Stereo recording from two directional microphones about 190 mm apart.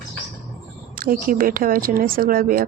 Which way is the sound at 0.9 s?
50° right (ahead or behind).